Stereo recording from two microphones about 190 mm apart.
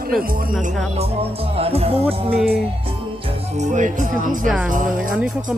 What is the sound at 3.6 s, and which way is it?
Speech, 40° right (ahead or behind).